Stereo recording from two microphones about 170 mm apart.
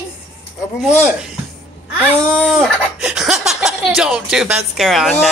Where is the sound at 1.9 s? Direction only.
10° right (ahead or behind).